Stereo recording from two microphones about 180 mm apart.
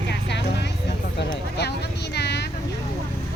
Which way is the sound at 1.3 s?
70° left (ahead or behind).